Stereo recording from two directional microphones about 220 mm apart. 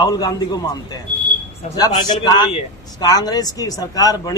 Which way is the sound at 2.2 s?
20° left (ahead or behind).